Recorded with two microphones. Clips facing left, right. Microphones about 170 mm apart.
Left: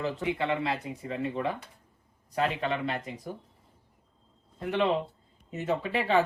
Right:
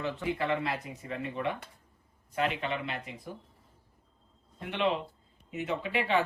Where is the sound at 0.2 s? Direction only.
25° left (ahead or behind); by 3.1 s 40° left (ahead or behind).